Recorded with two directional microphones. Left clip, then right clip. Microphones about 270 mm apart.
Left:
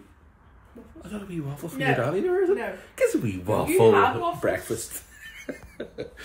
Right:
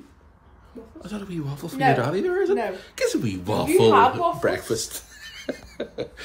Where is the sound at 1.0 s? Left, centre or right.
Centre.